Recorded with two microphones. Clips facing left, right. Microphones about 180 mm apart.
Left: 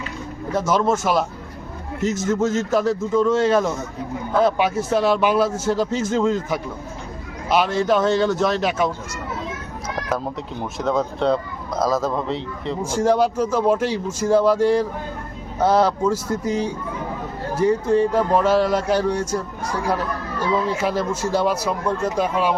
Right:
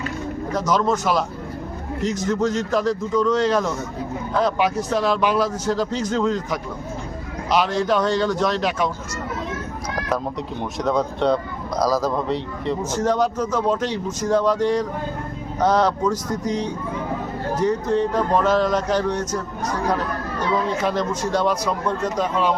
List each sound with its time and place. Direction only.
0.7 s speech: 10° left (ahead or behind)
2.5 s speech: 5° left (ahead or behind)
5.5 s a man's voice: 25° left (ahead or behind)
5.7 s a man's voice: 5° left (ahead or behind)
10.6 s a man's voice: centre (ahead or behind)